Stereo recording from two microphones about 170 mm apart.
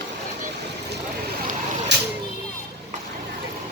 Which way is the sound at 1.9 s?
90° right.